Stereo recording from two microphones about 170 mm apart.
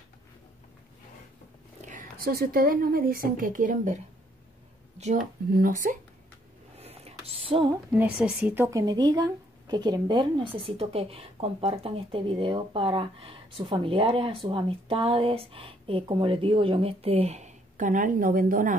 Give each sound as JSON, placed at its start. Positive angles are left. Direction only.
{"t": 1.9, "sound": "speech", "side_deg": -55}
{"t": 6.8, "sound": "a sound", "side_deg": -35}
{"t": 7.9, "sound": "a woman's voice", "side_deg": -5}